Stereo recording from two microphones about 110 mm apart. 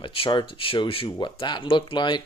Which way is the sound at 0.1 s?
55° left (ahead or behind).